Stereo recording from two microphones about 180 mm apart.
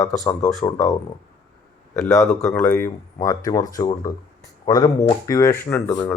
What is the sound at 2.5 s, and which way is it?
Speech, 10° left (ahead or behind).